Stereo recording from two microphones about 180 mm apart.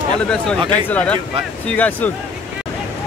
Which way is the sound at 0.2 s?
5° left (ahead or behind).